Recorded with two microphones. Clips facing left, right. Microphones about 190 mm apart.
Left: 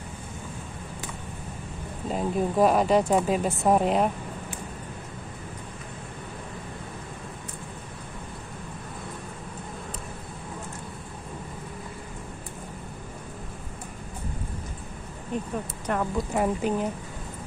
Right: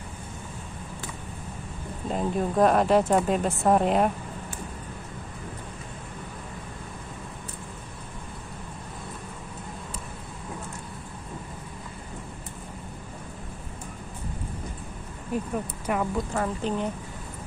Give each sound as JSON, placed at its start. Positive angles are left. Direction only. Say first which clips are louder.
{"t": 2.0, "sound": "speech", "louder": "left 1 dB", "side_deg": 5}
{"t": 15.3, "sound": "a sound", "louder": "right 2 dB", "side_deg": -5}
{"t": 15.9, "sound": "speech", "louder": "even", "side_deg": -5}
{"t": 16.3, "sound": "a woman's voice", "louder": "left 5 dB", "side_deg": 15}